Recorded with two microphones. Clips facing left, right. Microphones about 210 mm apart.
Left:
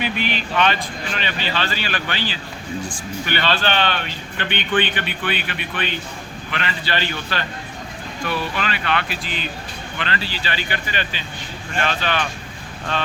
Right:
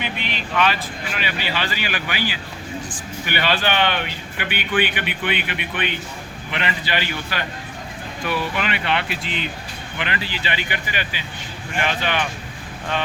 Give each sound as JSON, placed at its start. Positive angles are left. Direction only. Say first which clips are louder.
{"t": 0.2, "sound": "a man's voice", "louder": "even", "side_deg": 0}